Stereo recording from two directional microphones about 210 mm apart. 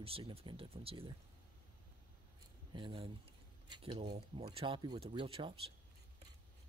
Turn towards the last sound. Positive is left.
turn(degrees=-25)  # may be behind; listen again after turning